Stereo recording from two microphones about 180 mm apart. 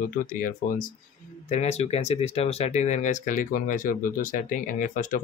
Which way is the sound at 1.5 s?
35° left (ahead or behind).